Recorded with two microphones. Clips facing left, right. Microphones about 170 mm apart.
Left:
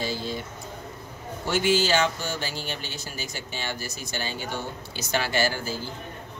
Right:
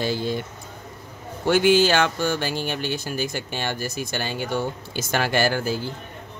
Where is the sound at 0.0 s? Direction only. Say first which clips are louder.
Right 5 dB; 60° right (ahead or behind).